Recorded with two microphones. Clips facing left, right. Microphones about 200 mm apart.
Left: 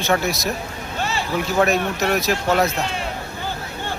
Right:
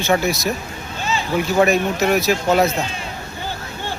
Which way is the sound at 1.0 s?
65° left (ahead or behind).